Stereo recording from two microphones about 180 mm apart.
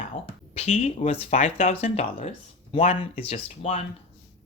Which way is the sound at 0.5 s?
35° left (ahead or behind).